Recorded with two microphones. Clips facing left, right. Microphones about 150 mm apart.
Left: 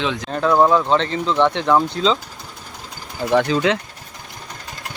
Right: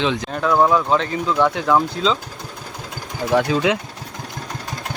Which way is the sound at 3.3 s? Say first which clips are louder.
Left 1 dB; 5° right (ahead or behind).